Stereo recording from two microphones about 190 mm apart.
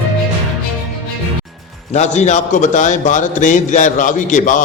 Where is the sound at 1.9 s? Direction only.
40° left (ahead or behind).